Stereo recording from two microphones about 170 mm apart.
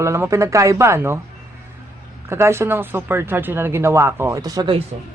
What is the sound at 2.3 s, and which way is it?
A man's voice, 15° right (ahead or behind).